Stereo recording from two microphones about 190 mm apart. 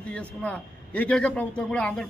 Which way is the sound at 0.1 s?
5° left (ahead or behind).